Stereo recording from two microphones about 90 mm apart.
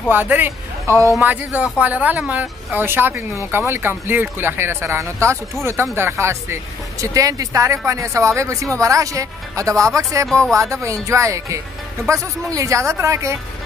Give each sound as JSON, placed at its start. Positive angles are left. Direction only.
{"t": 0.1, "sound": "speech", "side_deg": -20}